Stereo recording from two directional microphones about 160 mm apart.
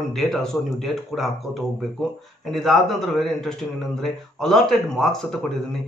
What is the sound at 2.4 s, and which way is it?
Speech, centre (ahead or behind).